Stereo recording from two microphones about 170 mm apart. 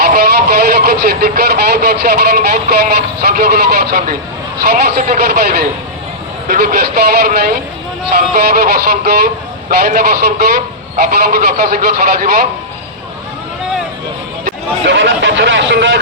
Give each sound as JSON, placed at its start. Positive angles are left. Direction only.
{"t": 0.0, "sound": "speech", "side_deg": -60}
{"t": 14.8, "sound": "speech", "side_deg": -90}